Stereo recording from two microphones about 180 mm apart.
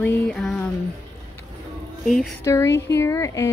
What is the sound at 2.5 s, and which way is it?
A woman's voice, 15° left (ahead or behind).